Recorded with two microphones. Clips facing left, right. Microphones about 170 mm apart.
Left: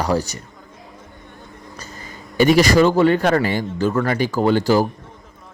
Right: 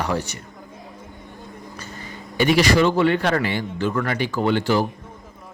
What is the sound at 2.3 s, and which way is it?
Speech, 45° left (ahead or behind).